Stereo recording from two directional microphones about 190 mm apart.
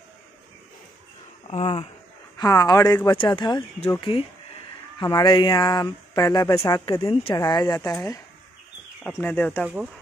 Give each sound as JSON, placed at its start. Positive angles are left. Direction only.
{"t": 1.5, "sound": "speech", "side_deg": 35}
{"t": 2.3, "sound": "speech", "side_deg": 20}